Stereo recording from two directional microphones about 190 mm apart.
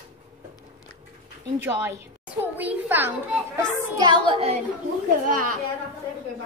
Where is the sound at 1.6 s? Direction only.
10° right (ahead or behind).